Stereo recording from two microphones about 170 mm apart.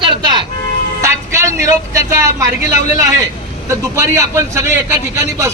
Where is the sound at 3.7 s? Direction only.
15° right (ahead or behind).